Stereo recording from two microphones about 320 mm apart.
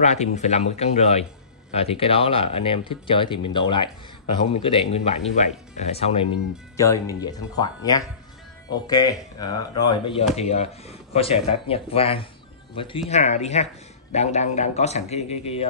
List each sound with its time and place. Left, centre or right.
0.0 s speech: left